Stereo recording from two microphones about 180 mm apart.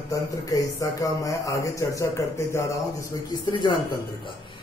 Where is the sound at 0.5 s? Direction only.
20° left (ahead or behind).